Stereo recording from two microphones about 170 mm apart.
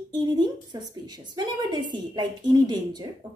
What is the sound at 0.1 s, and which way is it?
A woman's voice, 25° right (ahead or behind).